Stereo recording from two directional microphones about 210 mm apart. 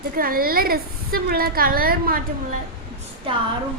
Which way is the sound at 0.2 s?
45° right (ahead or behind).